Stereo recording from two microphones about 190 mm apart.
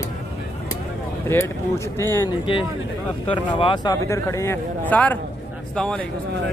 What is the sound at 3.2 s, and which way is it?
Speech, 25° left (ahead or behind).